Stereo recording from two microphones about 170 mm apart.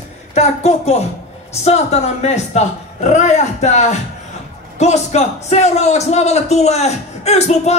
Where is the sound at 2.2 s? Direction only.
40° left (ahead or behind).